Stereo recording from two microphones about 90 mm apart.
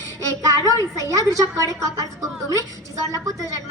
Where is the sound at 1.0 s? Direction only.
40° right (ahead or behind).